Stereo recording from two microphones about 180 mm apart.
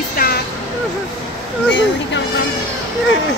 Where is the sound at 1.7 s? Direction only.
90° left.